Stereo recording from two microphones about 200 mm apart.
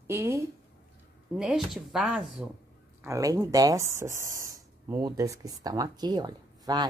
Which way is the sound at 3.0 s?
15° right (ahead or behind).